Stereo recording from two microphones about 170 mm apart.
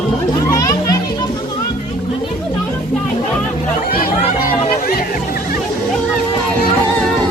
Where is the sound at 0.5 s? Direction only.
20° left (ahead or behind).